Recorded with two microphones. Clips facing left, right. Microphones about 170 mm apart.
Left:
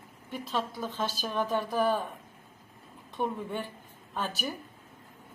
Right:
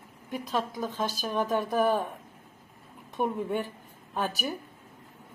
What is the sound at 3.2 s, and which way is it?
Speech, 15° right (ahead or behind).